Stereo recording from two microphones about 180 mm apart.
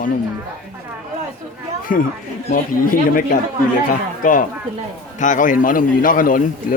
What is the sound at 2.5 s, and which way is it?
Speech, 50° left (ahead or behind).